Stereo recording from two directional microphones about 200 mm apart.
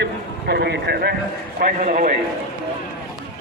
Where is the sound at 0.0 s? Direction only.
55° right (ahead or behind).